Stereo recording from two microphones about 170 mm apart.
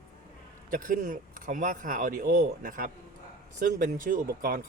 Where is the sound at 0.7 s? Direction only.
50° right (ahead or behind).